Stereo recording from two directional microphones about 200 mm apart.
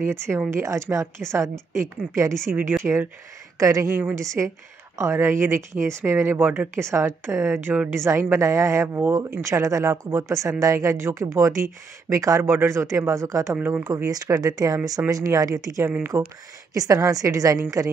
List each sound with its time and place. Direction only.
0.1 s speech: 10° right (ahead or behind)